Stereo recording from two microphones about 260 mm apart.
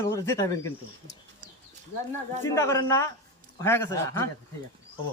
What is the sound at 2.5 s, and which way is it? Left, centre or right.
A man's voice, centre.